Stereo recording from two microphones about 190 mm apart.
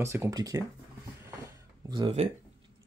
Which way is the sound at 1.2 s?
15° right (ahead or behind).